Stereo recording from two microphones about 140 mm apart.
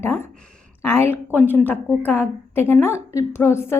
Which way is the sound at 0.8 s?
15° left (ahead or behind).